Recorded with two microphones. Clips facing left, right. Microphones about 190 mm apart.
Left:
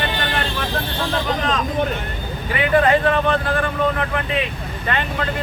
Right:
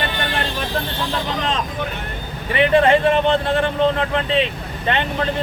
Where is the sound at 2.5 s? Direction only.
25° right (ahead or behind).